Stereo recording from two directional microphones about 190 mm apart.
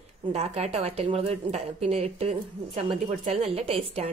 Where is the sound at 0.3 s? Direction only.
35° right (ahead or behind).